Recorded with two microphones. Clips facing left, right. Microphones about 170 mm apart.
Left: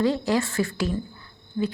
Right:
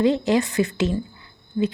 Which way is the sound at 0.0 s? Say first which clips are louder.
Right 4 dB; 20° right (ahead or behind).